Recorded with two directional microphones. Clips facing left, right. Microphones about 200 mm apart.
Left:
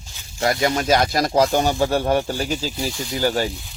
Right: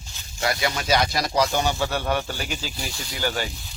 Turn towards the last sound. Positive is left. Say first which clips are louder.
# left 6 dB
turn(degrees=40)  # may be behind; listen again after turning